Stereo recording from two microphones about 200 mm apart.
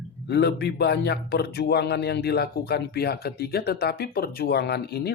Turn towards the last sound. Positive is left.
turn(degrees=55)  # may be behind; listen again after turning